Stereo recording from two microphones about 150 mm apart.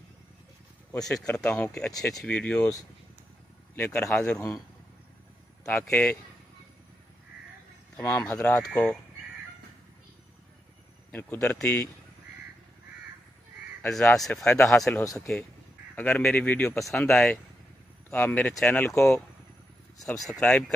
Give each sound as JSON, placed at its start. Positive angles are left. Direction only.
{"t": 0.9, "sound": "speech", "side_deg": 5}
{"t": 3.7, "sound": "speech", "side_deg": 15}
{"t": 4.1, "sound": "speech", "side_deg": 5}
{"t": 4.4, "sound": "speech", "side_deg": 20}
{"t": 5.9, "sound": "speech", "side_deg": 10}
{"t": 8.0, "sound": "speech", "side_deg": 20}
{"t": 8.5, "sound": "speech", "side_deg": 5}
{"t": 11.1, "sound": "speech", "side_deg": 10}
{"t": 13.8, "sound": "speech", "side_deg": 0}
{"t": 15.0, "sound": "speech", "side_deg": 20}
{"t": 20.0, "sound": "speech", "side_deg": 0}